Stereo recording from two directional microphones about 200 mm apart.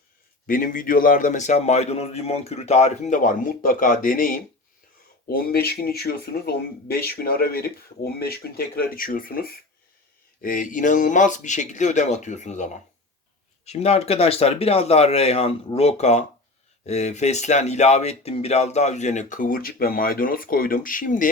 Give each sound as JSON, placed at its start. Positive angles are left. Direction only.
{"t": 0.4, "sound": "speech", "side_deg": 45}